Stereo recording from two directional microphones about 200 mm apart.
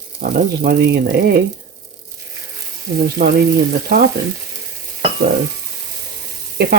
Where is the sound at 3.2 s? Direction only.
55° right (ahead or behind).